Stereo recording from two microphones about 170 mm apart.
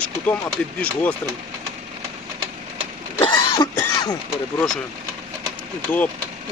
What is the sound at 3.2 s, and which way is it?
Throat clearing, 30° left (ahead or behind).